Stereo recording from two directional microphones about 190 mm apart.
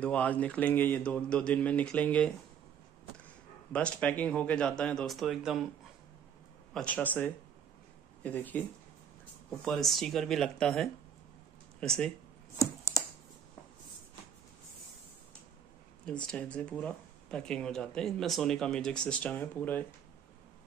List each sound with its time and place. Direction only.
0.0 s speech: 5° left (ahead or behind)
3.7 s speech: 5° left (ahead or behind)
6.7 s speech: 5° left (ahead or behind)
9.7 s speech: centre (ahead or behind)
12.5 s computer keyboard: 15° left (ahead or behind)
16.3 s speech: 5° left (ahead or behind)